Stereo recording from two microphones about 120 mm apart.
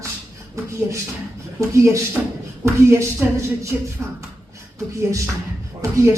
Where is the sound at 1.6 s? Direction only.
25° right (ahead or behind).